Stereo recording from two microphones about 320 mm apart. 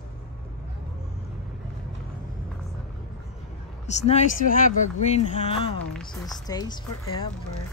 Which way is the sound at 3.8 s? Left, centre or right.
Left.